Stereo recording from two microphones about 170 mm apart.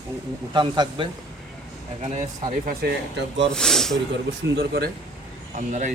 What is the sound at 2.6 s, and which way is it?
Speech, 80° right.